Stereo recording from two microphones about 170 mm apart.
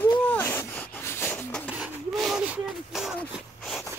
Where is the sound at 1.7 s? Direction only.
5° right (ahead or behind).